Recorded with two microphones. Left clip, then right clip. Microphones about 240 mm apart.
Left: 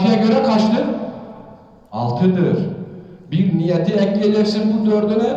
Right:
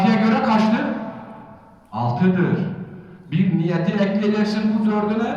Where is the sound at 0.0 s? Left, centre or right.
Centre.